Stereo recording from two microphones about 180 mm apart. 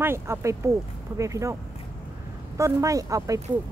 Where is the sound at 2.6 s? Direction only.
15° right (ahead or behind).